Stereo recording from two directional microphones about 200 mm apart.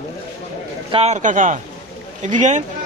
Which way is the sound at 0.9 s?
35° right (ahead or behind).